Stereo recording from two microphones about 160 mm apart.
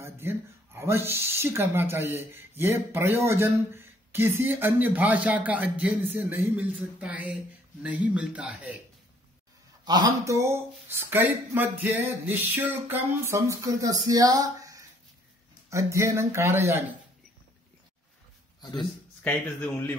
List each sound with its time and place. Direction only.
0.0 s speech: 15° right (ahead or behind)
9.8 s speech: 25° right (ahead or behind)
18.6 s a man's voice: 25° left (ahead or behind)
19.2 s speech: 10° left (ahead or behind)